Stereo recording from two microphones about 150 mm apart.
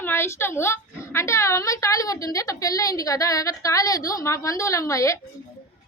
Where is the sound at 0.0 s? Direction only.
15° left (ahead or behind).